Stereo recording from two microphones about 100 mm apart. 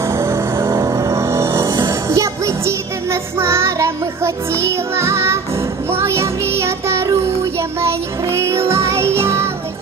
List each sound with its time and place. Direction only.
0.0 s vehicle: 30° right (ahead or behind)
1.8 s music: 30° right (ahead or behind)